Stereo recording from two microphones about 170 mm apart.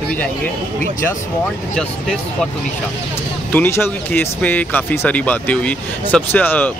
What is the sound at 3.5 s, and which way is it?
Speech, 10° left (ahead or behind).